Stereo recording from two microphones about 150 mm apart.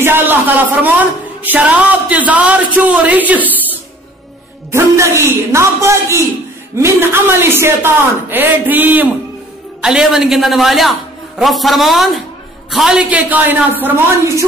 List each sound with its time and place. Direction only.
0.0 s speech: 15° right (ahead or behind)
4.6 s a man's voice: 20° right (ahead or behind)